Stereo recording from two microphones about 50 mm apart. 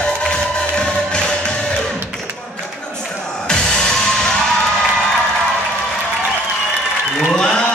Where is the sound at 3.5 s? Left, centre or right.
Centre.